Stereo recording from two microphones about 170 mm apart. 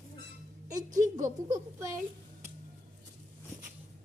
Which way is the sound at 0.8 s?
50° right (ahead or behind).